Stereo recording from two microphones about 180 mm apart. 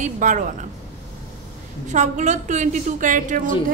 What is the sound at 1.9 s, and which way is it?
A woman's voice, 40° right (ahead or behind).